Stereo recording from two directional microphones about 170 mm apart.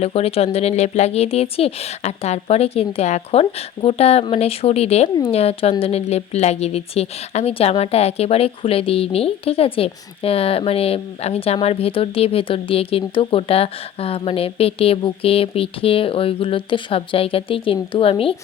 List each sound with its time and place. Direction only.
0.0 s a woman's voice: 35° left (ahead or behind)